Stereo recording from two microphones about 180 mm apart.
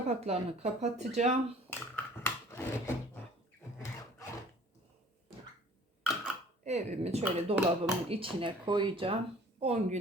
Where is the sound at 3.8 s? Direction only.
15° left (ahead or behind).